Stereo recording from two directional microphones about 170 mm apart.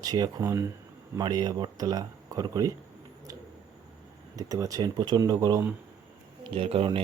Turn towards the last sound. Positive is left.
turn(degrees=-35)  # may be behind; listen again after turning